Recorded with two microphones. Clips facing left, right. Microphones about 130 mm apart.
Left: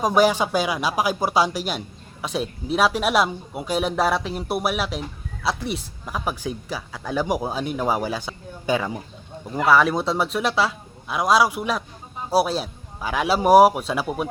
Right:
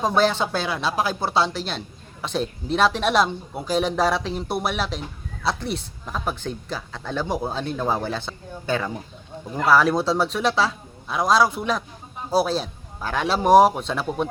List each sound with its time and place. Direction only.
0.0 s speech: 10° left (ahead or behind)
9.6 s a man's voice: centre (ahead or behind)